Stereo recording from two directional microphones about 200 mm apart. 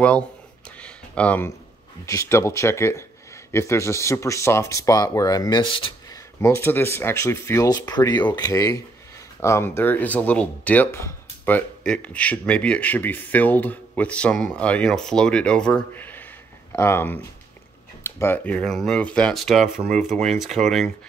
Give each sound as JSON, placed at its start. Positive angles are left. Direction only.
{"t": 0.7, "sound": "a sound", "side_deg": 5}
{"t": 2.0, "sound": "speech", "side_deg": 15}
{"t": 6.4, "sound": "speech", "side_deg": 10}
{"t": 19.9, "sound": "speech", "side_deg": -35}
{"t": 20.2, "sound": "speech", "side_deg": 0}